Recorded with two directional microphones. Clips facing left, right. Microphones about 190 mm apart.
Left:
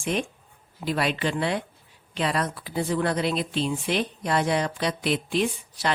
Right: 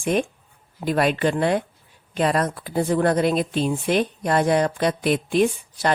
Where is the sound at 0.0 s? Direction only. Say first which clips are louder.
Right 5 dB; 50° right (ahead or behind).